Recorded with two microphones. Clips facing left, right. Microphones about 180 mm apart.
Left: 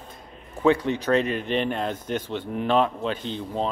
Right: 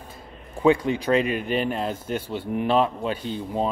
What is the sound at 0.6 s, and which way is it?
Speech, 10° right (ahead or behind).